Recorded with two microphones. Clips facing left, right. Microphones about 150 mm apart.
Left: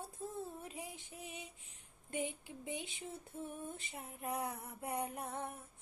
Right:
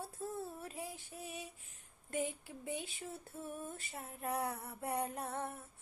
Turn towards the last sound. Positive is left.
turn(degrees=15)  # may be behind; listen again after turning